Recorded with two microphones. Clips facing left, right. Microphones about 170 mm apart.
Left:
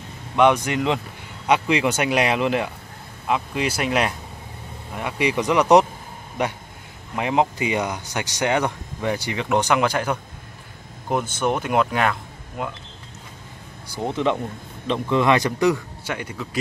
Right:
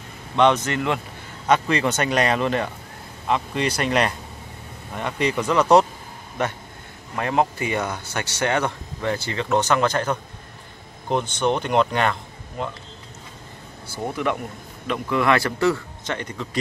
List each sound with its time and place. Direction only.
0.4 s speech: 10° left (ahead or behind)
13.8 s speech: 20° left (ahead or behind)